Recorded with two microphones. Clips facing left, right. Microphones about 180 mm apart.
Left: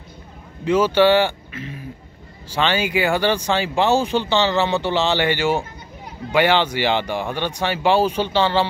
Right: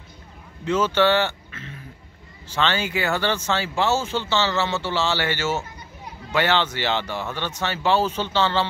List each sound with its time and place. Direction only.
0.7 s speech: 10° left (ahead or behind)